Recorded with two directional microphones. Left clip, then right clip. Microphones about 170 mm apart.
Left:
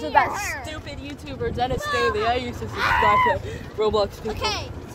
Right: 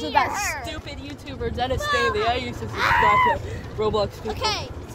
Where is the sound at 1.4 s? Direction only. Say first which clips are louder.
Left 1 dB; 5° left (ahead or behind).